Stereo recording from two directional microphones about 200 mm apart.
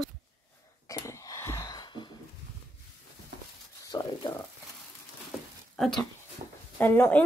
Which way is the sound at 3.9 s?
20° left (ahead or behind).